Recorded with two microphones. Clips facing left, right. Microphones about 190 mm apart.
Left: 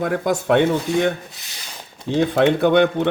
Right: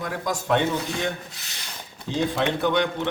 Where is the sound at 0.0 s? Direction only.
60° left (ahead or behind).